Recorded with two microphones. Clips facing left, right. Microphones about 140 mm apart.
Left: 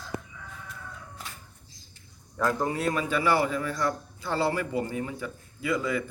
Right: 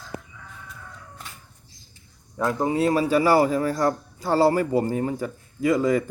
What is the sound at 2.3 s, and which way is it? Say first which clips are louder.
A man's voice: right 4 dB; 20° right (ahead or behind).